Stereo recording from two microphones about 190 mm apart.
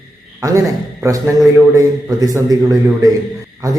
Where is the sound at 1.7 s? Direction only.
15° right (ahead or behind).